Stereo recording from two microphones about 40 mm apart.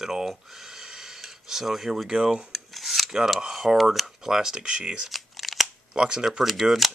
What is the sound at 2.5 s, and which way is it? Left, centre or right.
Filing, centre.